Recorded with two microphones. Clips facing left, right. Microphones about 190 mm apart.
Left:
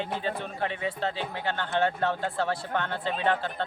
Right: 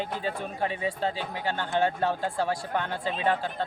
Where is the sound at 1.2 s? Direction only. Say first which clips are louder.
Even; 10° right (ahead or behind).